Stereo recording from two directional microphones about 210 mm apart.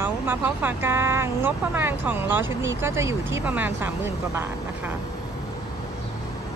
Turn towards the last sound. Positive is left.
turn(degrees=-10)  # may be behind; listen again after turning